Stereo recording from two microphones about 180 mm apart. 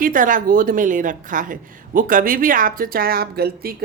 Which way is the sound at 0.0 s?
50° right (ahead or behind).